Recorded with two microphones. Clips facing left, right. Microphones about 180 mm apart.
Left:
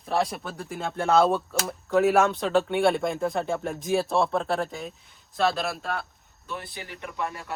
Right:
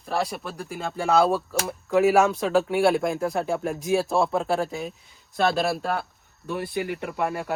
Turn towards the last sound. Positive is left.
turn(degrees=-55)  # may be behind; listen again after turning